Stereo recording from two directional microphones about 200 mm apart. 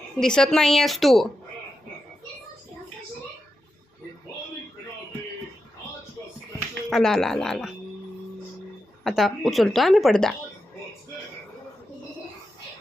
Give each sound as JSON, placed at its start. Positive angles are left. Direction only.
{"t": 0.2, "sound": "a woman's voice", "side_deg": 5}
{"t": 6.9, "sound": "a woman's voice", "side_deg": 0}
{"t": 9.0, "sound": "a woman's voice", "side_deg": 0}